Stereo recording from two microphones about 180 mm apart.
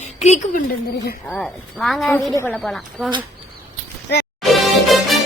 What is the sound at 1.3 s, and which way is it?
Speech, centre (ahead or behind).